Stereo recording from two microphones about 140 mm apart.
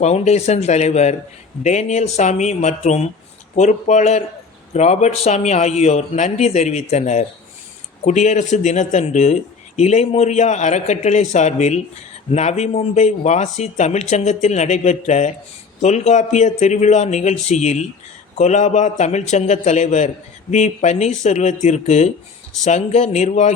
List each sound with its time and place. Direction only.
0.0 s a man's voice: 50° left (ahead or behind)